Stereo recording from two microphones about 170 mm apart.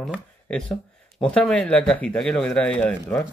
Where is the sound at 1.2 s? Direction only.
5° left (ahead or behind).